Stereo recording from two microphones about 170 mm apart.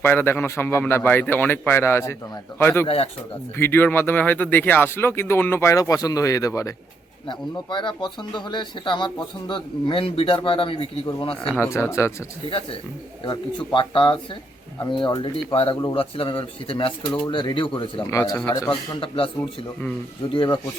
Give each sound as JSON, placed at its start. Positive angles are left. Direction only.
{"t": 0.0, "sound": "speech", "side_deg": 10}
{"t": 2.8, "sound": "speech", "side_deg": 35}
{"t": 3.6, "sound": "speech", "side_deg": 10}
{"t": 11.4, "sound": "speech", "side_deg": 10}
{"t": 13.2, "sound": "speech", "side_deg": 25}
{"t": 18.0, "sound": "speech", "side_deg": 20}
{"t": 18.7, "sound": "speech", "side_deg": 30}
{"t": 20.3, "sound": "speech", "side_deg": 30}